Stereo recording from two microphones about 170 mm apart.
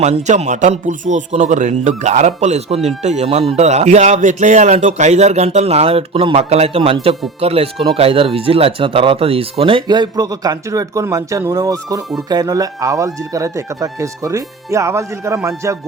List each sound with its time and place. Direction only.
0.0 s speech: 40° right (ahead or behind); by 15.8 s 15° right (ahead or behind)